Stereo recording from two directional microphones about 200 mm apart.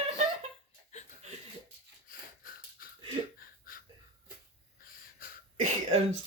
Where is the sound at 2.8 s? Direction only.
45° left (ahead or behind).